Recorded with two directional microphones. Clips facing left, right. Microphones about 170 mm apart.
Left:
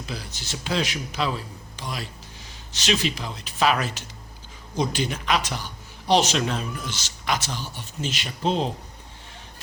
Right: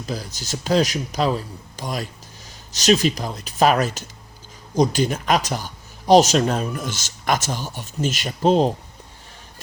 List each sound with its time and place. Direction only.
0.0 s a man's voice: 40° right (ahead or behind)